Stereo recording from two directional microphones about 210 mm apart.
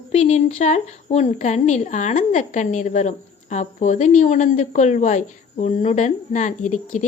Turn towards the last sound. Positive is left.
turn(degrees=35)  # may be behind; listen again after turning